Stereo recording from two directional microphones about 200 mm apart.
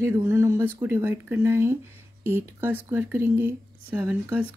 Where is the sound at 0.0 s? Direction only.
10° right (ahead or behind).